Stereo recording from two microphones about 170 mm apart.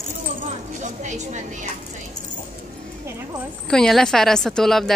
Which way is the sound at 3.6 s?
5° left (ahead or behind).